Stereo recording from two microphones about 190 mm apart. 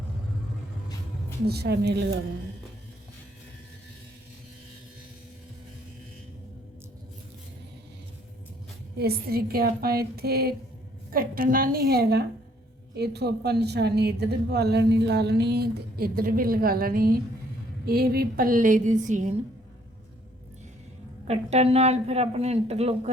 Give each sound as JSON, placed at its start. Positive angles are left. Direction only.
{"t": 1.5, "sound": "a woman's voice", "side_deg": -55}
{"t": 9.0, "sound": "a woman's voice", "side_deg": -55}
{"t": 21.2, "sound": "speech", "side_deg": -35}